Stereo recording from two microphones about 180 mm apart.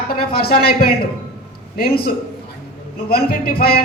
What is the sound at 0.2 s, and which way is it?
Speech, 60° left (ahead or behind).